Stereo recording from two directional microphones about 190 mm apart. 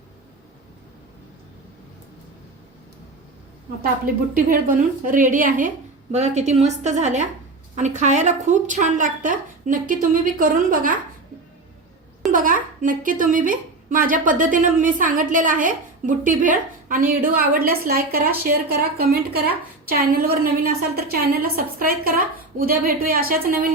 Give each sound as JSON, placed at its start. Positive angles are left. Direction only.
{"t": 4.0, "sound": "a woman's voice", "side_deg": -45}
{"t": 12.3, "sound": "a child's voice", "side_deg": -45}